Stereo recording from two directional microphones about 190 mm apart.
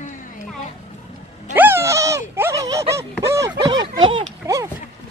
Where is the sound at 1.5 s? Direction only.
10° right (ahead or behind); by 4.3 s 25° right (ahead or behind).